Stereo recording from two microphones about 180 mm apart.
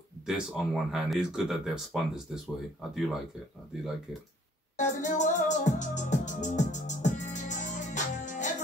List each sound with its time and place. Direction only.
0.3 s speech: centre (ahead or behind)
4.7 s music: 45° left (ahead or behind)